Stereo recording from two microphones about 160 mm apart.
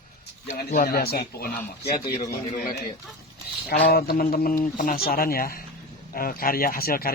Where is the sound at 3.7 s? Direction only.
75° left (ahead or behind).